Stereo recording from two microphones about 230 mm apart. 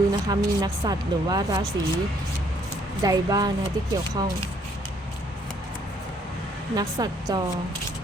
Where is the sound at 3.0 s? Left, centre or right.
Centre.